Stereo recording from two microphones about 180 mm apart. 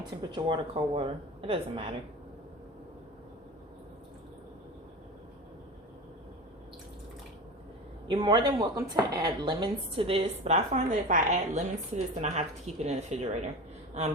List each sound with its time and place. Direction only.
0.3 s speech: 25° right (ahead or behind)
8.0 s a woman's voice: 25° right (ahead or behind)